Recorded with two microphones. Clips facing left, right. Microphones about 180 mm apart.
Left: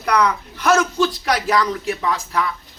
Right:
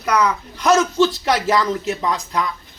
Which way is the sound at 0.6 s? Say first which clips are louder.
Right 2 dB; 20° right (ahead or behind).